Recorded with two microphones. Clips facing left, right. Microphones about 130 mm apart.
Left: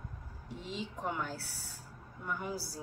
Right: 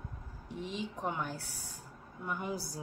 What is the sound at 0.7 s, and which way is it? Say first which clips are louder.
A woman's voice: even; 15° right (ahead or behind).